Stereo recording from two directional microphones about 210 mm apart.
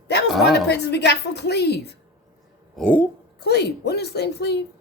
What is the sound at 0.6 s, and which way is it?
A woman's voice, 55° left (ahead or behind).